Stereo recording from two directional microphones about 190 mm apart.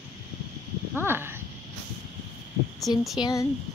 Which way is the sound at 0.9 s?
10° right (ahead or behind).